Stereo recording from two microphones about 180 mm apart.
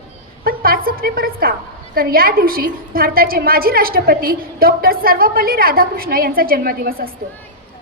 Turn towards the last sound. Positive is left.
turn(degrees=-55)  # may be behind; listen again after turning